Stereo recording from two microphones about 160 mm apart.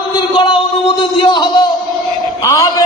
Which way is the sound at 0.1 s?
30° left (ahead or behind).